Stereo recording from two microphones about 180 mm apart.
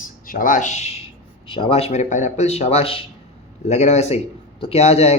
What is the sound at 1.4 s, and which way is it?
Speech, 30° left (ahead or behind).